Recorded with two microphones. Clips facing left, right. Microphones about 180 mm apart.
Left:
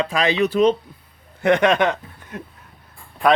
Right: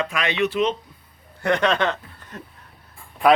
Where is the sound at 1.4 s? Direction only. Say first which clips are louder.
Left 4 dB; 15° left (ahead or behind).